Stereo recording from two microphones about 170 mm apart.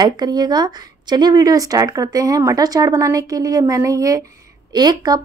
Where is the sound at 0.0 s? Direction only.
25° right (ahead or behind).